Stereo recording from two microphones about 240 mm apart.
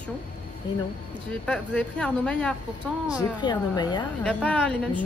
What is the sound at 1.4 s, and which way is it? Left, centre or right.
Speech, centre.